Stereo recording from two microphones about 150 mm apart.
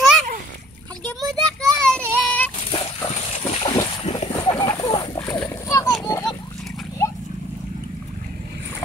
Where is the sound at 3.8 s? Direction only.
35° left (ahead or behind).